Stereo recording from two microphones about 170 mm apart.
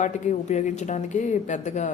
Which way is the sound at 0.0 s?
45° left (ahead or behind).